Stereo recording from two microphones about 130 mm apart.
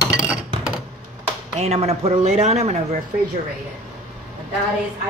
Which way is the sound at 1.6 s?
55° right (ahead or behind).